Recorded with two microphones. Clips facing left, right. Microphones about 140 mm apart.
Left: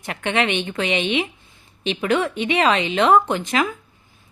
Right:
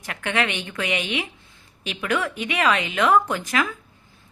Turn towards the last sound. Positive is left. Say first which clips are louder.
# left 3 dB
turn(degrees=20)  # may be behind; listen again after turning